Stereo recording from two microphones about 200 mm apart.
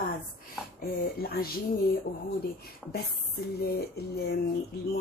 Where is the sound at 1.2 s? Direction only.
50° left (ahead or behind).